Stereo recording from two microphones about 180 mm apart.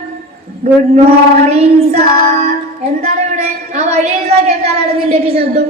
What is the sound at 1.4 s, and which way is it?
A woman's voice, 35° right (ahead or behind).